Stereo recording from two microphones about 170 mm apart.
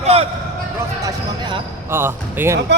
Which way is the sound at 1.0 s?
30° right (ahead or behind).